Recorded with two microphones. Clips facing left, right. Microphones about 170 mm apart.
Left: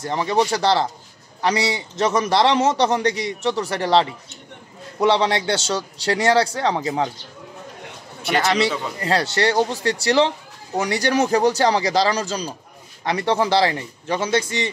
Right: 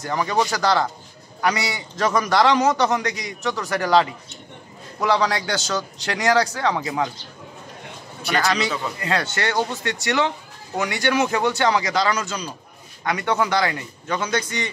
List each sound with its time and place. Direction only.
0.0 s a man's voice: 25° left (ahead or behind)
8.3 s a man's voice: 25° left (ahead or behind)